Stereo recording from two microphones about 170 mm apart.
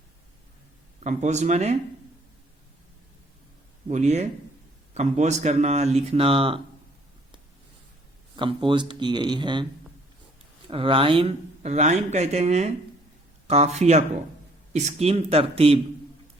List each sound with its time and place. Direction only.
1.0 s speech: 45° right (ahead or behind)
3.8 s speech: 40° right (ahead or behind)
8.4 s speech: 30° right (ahead or behind)
10.7 s speech: 30° right (ahead or behind)